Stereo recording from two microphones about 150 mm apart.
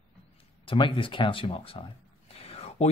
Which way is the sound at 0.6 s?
35° left (ahead or behind).